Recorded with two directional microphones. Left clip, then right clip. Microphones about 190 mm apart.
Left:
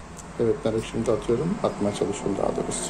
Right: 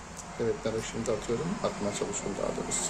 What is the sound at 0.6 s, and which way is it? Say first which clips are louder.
Speech: left 7 dB; 25° left (ahead or behind).